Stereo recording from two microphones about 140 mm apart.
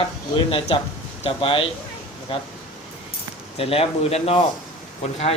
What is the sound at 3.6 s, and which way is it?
Speech, 45° left (ahead or behind).